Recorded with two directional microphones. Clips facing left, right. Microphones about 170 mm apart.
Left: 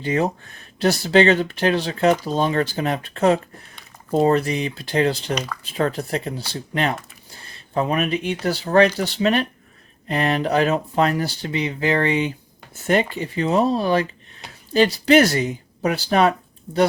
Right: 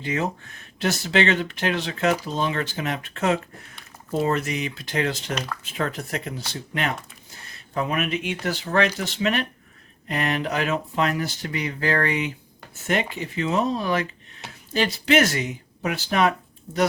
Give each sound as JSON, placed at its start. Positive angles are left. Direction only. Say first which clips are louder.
{"t": 0.0, "sound": "speech", "louder": "left 5 dB", "side_deg": 35}